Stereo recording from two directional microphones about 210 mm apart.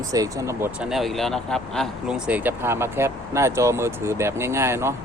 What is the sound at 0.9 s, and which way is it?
Speech, centre (ahead or behind).